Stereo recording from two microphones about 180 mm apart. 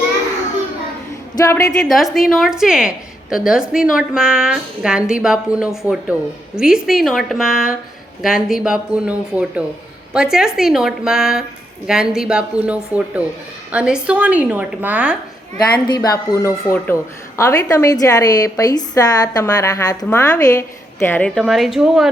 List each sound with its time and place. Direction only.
1.5 s a woman's voice: 15° left (ahead or behind)
1.8 s a woman's voice: centre (ahead or behind)
15.9 s a woman's voice: 20° left (ahead or behind); by 22.1 s centre (ahead or behind)